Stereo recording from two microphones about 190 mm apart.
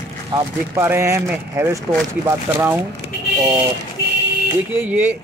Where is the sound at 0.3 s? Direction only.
10° right (ahead or behind).